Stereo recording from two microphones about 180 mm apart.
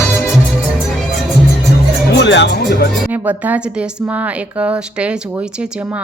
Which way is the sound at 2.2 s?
75° left (ahead or behind).